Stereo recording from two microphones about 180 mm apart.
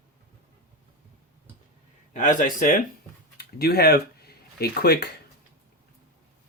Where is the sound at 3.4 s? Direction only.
60° left (ahead or behind).